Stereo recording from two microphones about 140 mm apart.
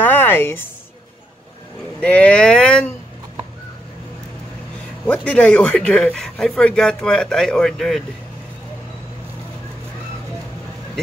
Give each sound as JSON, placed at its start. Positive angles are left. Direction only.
{"t": 0.0, "sound": "a sound", "side_deg": 15}
{"t": 2.0, "sound": "speech", "side_deg": 10}
{"t": 5.0, "sound": "speech", "side_deg": 10}